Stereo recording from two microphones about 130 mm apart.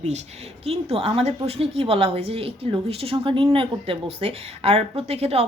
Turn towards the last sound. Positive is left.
turn(degrees=-50)  # may be behind; listen again after turning